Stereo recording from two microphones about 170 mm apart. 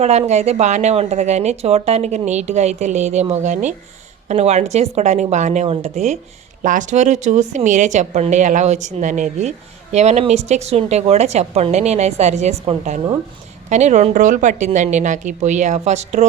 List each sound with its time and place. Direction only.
0.0 s a woman's voice: 40° right (ahead or behind)